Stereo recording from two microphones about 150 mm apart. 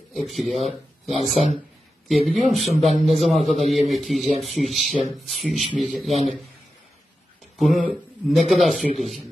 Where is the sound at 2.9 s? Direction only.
50° left (ahead or behind).